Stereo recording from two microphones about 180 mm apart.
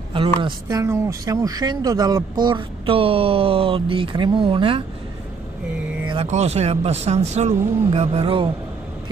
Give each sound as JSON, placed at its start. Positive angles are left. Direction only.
{"t": 0.1, "sound": "speech", "side_deg": -30}
{"t": 6.2, "sound": "speech", "side_deg": -35}